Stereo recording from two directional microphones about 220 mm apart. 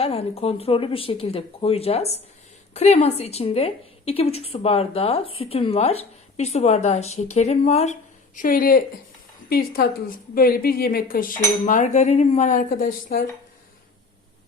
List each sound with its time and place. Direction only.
0.0 s a woman's voice: 25° left (ahead or behind)
8.4 s cutlery: 40° left (ahead or behind)
9.5 s speech: 45° left (ahead or behind)
10.3 s cutlery: 40° left (ahead or behind)